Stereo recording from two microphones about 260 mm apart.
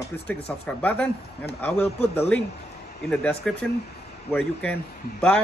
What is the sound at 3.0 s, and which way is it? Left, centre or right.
A man's voice, centre.